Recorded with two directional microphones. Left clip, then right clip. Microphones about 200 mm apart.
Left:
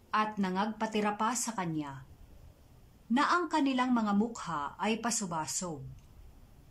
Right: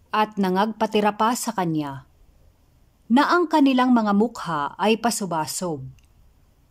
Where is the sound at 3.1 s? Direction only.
40° right (ahead or behind).